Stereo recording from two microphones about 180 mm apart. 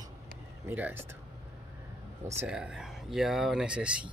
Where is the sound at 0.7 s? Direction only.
10° right (ahead or behind).